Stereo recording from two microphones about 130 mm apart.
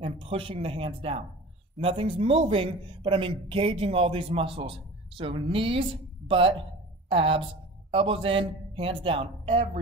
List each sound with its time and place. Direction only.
0.0 s speech: 45° right (ahead or behind)